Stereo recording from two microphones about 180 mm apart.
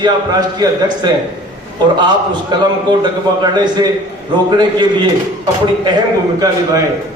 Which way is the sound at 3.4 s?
25° right (ahead or behind).